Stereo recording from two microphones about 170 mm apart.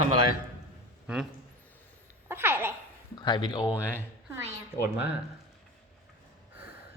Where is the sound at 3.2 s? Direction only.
25° left (ahead or behind).